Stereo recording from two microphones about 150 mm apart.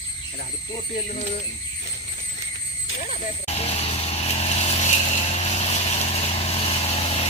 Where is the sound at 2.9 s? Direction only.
60° left (ahead or behind).